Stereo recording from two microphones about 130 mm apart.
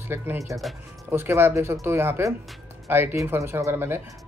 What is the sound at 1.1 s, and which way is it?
Speech, 20° right (ahead or behind).